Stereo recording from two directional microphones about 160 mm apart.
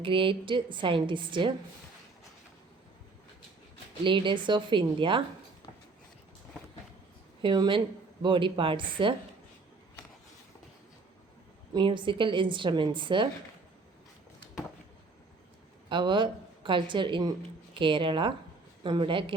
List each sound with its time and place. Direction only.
0.0 s a woman's voice: 30° right (ahead or behind)
4.0 s a woman's voice: 30° right (ahead or behind)
7.4 s a woman's voice: 30° right (ahead or behind)
11.7 s a woman's voice: 30° right (ahead or behind)
15.9 s a woman's voice: 30° right (ahead or behind)